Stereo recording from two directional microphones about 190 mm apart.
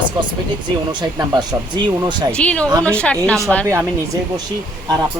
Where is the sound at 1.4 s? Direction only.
25° right (ahead or behind).